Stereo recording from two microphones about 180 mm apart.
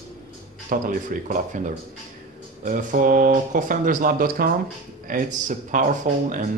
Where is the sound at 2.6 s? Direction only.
45° right (ahead or behind).